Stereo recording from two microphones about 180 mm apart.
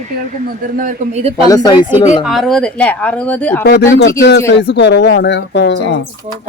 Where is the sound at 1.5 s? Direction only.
20° left (ahead or behind).